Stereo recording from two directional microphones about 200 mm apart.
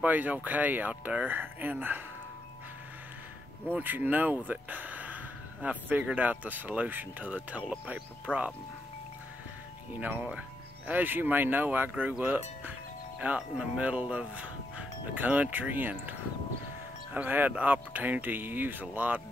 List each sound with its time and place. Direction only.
0.0 s speech: 10° right (ahead or behind)
3.7 s speech: 10° right (ahead or behind)
9.9 s speech: 10° right (ahead or behind)